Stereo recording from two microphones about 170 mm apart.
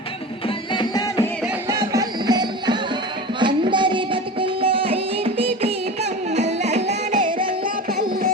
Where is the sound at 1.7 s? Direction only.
20° right (ahead or behind); by 7.2 s 45° right (ahead or behind).